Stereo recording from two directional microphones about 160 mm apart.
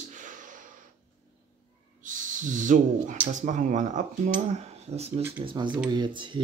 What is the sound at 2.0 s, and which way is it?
Speech, 55° right (ahead or behind).